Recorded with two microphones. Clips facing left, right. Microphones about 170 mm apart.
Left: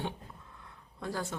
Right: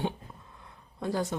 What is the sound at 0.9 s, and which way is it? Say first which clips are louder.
Speech: right 6 dB; 20° right (ahead or behind).